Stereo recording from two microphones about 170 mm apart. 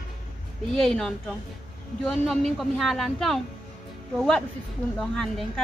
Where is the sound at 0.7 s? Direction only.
Centre (ahead or behind).